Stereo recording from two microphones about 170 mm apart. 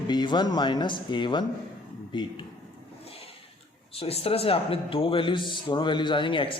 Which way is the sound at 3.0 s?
35° left (ahead or behind).